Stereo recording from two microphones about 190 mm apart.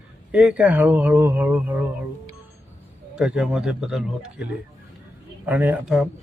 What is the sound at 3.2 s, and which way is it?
A man's voice, 5° right (ahead or behind).